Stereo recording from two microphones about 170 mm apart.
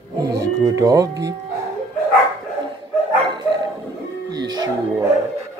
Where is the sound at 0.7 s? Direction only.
20° right (ahead or behind).